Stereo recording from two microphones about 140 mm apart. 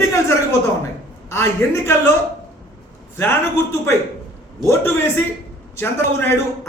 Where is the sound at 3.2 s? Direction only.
20° left (ahead or behind).